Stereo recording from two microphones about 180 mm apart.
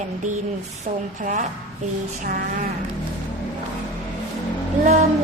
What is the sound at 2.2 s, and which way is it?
Speech, 50° right (ahead or behind).